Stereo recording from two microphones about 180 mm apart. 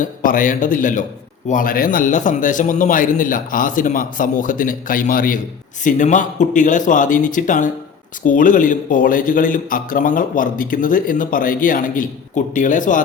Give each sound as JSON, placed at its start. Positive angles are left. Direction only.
{"t": 0.0, "sound": "a man's voice", "side_deg": 50}